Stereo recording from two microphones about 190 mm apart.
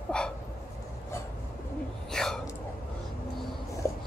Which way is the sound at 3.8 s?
15° left (ahead or behind).